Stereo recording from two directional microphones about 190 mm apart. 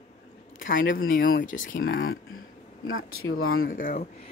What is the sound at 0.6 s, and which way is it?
Speech, 45° left (ahead or behind).